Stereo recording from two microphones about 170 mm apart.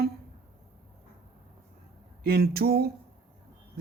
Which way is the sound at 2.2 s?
65° right (ahead or behind).